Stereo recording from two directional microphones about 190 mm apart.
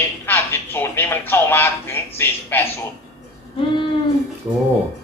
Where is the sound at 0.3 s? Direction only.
10° left (ahead or behind).